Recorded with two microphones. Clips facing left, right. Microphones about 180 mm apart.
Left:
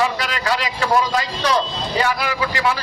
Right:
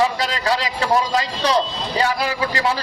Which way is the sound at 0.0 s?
30° right (ahead or behind).